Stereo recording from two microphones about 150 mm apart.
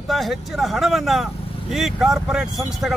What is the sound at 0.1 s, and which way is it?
Speech, centre (ahead or behind).